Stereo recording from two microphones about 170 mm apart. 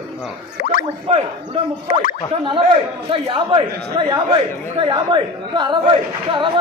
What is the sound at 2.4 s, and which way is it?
A man's voice, 30° right (ahead or behind).